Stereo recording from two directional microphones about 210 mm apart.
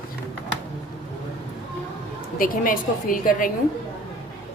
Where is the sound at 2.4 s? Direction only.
40° left (ahead or behind).